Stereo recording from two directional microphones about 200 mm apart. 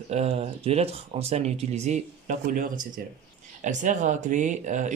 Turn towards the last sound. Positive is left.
turn(degrees=-40)  # may be behind; listen again after turning